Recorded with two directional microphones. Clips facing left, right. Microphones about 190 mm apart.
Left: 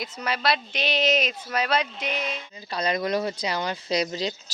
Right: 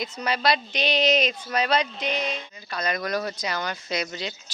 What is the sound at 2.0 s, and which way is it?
Speech, 35° right (ahead or behind).